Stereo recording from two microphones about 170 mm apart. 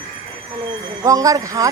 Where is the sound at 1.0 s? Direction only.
20° right (ahead or behind).